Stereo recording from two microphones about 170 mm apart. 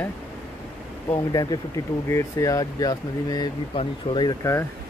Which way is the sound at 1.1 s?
25° left (ahead or behind).